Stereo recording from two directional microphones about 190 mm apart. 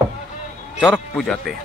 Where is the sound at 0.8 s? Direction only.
Centre (ahead or behind).